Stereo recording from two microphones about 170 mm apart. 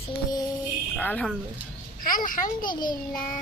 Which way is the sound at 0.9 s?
10° left (ahead or behind).